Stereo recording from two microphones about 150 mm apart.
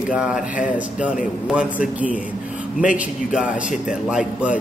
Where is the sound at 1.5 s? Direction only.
10° right (ahead or behind).